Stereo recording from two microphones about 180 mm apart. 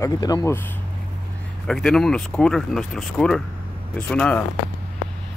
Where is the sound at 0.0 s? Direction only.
20° left (ahead or behind).